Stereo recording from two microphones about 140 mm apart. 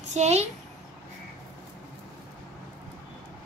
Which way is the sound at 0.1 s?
50° right (ahead or behind).